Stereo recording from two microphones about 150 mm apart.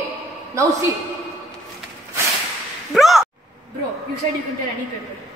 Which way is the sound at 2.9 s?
Centre (ahead or behind).